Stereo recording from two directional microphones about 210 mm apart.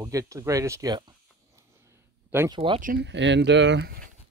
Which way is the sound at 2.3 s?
20° right (ahead or behind).